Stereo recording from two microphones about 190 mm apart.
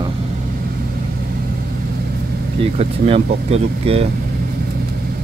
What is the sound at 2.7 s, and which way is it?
Speech, 30° right (ahead or behind).